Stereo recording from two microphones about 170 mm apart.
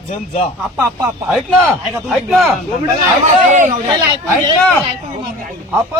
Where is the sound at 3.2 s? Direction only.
45° right (ahead or behind).